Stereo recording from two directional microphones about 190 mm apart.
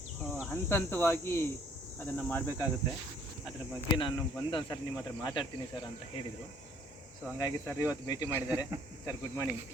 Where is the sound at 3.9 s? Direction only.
25° left (ahead or behind).